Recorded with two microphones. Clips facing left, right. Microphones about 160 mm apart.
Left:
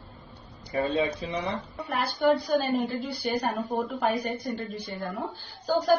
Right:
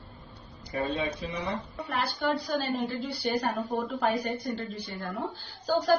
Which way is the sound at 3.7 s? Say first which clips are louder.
Left 1 dB; centre (ahead or behind).